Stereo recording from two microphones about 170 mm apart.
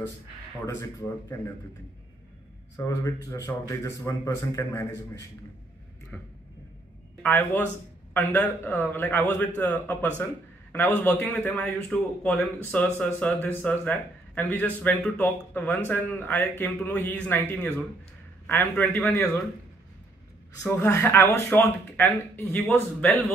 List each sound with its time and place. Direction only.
0.7 s a man's voice: 15° left (ahead or behind)
2.8 s a man's voice: 20° left (ahead or behind)
6.1 s a man's voice: 5° left (ahead or behind)
20.6 s a man's voice: 15° left (ahead or behind)